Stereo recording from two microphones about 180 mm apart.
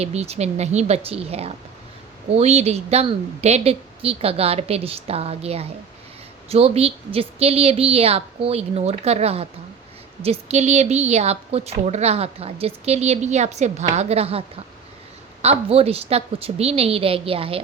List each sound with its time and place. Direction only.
0.0 s a woman's voice: 35° right (ahead or behind)